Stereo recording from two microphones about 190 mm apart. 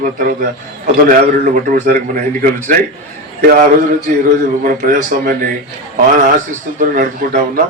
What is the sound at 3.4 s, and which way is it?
A man's voice, 45° right (ahead or behind).